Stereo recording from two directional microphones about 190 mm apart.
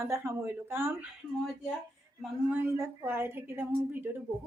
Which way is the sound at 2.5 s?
10° right (ahead or behind).